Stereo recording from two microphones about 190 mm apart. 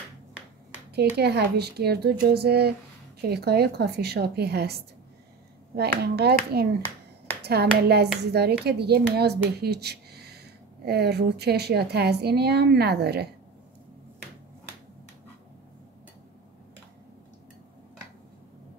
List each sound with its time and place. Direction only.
0.9 s speech: 60° right (ahead or behind)